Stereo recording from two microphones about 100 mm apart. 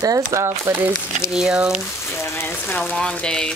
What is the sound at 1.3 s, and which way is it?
Speech, 10° right (ahead or behind).